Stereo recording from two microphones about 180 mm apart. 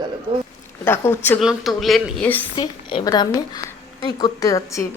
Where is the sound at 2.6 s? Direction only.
25° left (ahead or behind).